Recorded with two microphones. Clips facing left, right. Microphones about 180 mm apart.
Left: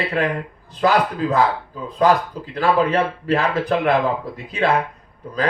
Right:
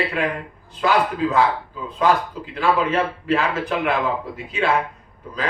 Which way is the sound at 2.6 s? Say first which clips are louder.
Left 2 dB; 35° left (ahead or behind).